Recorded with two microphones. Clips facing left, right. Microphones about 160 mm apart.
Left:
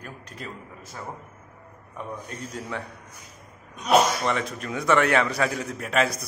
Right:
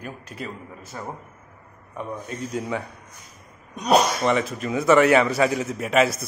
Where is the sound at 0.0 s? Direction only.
5° right (ahead or behind).